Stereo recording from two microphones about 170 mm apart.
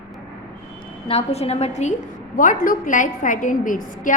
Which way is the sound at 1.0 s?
35° left (ahead or behind).